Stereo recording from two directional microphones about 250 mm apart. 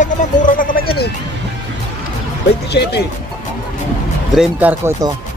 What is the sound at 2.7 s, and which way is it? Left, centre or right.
Speech, left.